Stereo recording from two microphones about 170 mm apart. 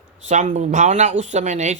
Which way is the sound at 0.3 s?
45° right (ahead or behind).